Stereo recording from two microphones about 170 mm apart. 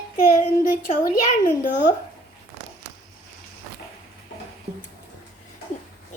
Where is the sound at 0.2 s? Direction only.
50° left (ahead or behind).